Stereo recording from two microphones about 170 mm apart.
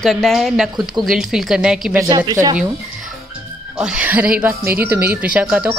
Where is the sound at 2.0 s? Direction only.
20° right (ahead or behind).